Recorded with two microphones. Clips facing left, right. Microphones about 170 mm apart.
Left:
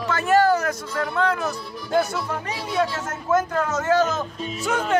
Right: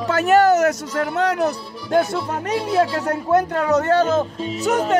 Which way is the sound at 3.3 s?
35° right (ahead or behind).